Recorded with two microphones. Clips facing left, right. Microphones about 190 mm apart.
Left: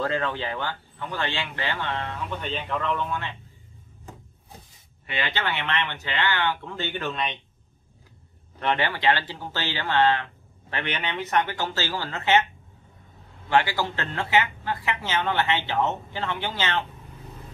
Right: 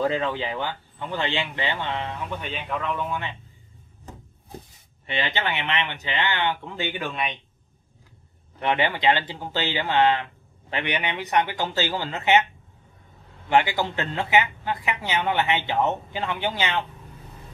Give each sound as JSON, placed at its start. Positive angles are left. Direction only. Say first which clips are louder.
{"t": 0.0, "sound": "speech", "louder": "right 2 dB", "side_deg": -15}
{"t": 5.0, "sound": "speech", "louder": "right 2 dB", "side_deg": -20}
{"t": 8.5, "sound": "speech", "louder": "right 2 dB", "side_deg": -15}
{"t": 13.5, "sound": "speech", "louder": "right 2 dB", "side_deg": -20}